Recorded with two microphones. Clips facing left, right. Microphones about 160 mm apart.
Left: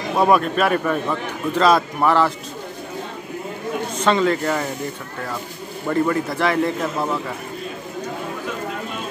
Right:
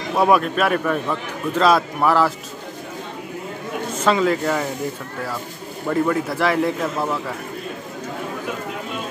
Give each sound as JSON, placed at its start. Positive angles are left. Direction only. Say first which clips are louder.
{"t": 0.2, "sound": "a man's voice", "louder": "even", "side_deg": 0}
{"t": 4.0, "sound": "a man's voice", "louder": "even", "side_deg": -5}
{"t": 5.9, "sound": "a man's voice", "louder": "even", "side_deg": 0}